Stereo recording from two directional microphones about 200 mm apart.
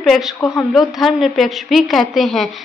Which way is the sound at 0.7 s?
Centre (ahead or behind).